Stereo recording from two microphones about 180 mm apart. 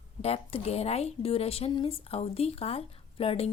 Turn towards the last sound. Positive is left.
turn(degrees=35)  # may be behind; listen again after turning